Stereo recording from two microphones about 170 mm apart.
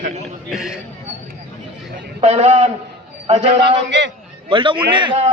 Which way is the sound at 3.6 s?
90° right.